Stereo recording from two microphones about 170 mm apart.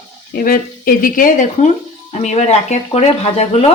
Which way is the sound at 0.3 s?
55° left (ahead or behind).